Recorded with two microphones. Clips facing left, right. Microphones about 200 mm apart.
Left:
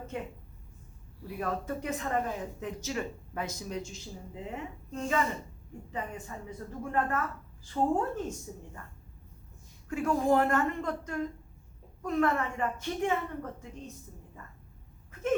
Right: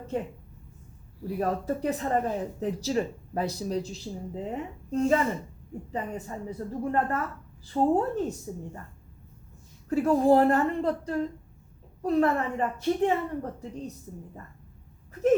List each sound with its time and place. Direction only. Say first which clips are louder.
1.4 s speech: right 5 dB; 35° right (ahead or behind)
9.9 s speech: right 6 dB; 35° right (ahead or behind)